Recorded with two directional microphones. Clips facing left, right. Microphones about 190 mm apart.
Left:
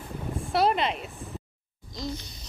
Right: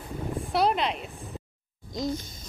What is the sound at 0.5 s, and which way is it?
Speech, centre (ahead or behind).